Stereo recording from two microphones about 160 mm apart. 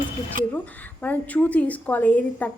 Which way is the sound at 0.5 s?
10° left (ahead or behind).